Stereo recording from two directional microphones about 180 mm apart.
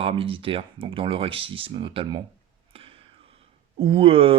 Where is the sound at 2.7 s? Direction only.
30° right (ahead or behind).